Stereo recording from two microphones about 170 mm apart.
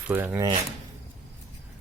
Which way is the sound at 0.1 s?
10° right (ahead or behind).